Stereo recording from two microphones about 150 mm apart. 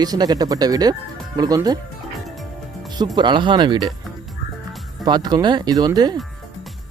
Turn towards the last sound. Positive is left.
turn(degrees=-25)  # may be behind; listen again after turning